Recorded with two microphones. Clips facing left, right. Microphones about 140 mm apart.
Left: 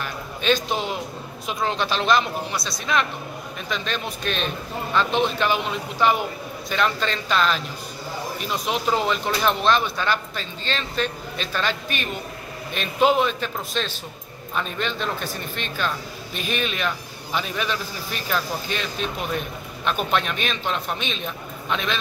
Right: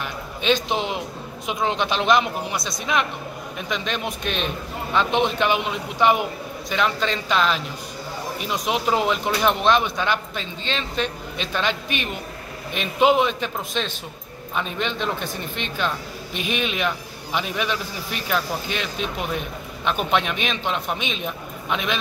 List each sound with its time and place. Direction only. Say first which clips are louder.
0.0 s a sound: even; 15° right (ahead or behind)
1.5 s speech: right 1 dB; 15° right (ahead or behind)
12.7 s speech: right 1 dB; 15° right (ahead or behind)